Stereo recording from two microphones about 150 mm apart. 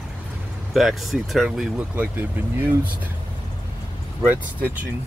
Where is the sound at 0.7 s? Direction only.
Centre (ahead or behind).